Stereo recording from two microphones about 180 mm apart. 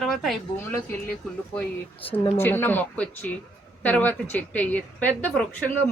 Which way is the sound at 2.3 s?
10° left (ahead or behind).